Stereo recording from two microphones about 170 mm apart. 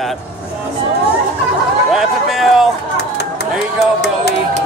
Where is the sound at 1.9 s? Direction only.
Centre (ahead or behind).